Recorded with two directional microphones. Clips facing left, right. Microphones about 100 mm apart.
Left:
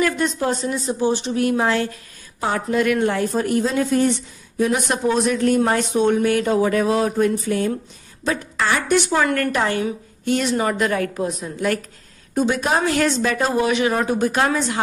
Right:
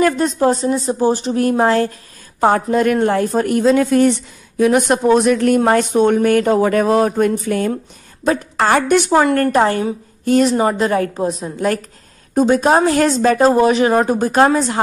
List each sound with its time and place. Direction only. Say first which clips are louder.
0.0 s a woman's voice: right 6 dB; 35° right (ahead or behind); by 3.6 s 55° right (ahead or behind)
3.6 s speech: right 6 dB; 70° right (ahead or behind)
4.7 s a woman's voice: right 7 dB; 55° right (ahead or behind)
9.1 s a woman's voice: right 6 dB; 30° right (ahead or behind)
12.4 s a woman's voice: right 7 dB; 40° right (ahead or behind)